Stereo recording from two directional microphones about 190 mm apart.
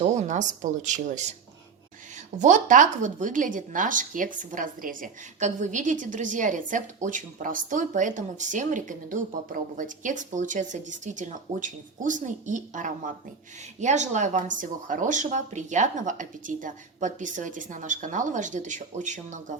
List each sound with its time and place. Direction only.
0.0 s speech: 40° right (ahead or behind)
2.4 s speech: 40° right (ahead or behind)